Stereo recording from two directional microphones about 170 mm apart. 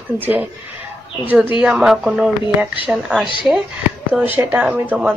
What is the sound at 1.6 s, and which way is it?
Speech, 5° right (ahead or behind).